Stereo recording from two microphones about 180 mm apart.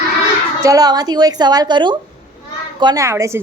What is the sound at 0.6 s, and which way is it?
A woman's voice, 20° right (ahead or behind).